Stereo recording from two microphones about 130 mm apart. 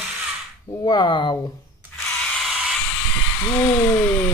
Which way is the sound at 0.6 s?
35° left (ahead or behind).